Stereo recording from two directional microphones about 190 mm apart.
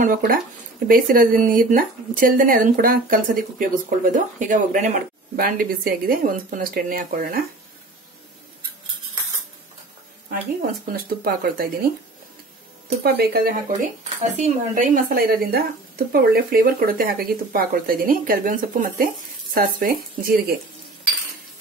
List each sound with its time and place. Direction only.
0.0 s speech: 45° right (ahead or behind)
10.3 s speech: 50° right (ahead or behind)
13.0 s speech: 55° right (ahead or behind)
14.0 s speech: 35° right (ahead or behind)